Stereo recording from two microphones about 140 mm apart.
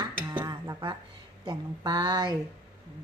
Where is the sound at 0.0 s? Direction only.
30° right (ahead or behind).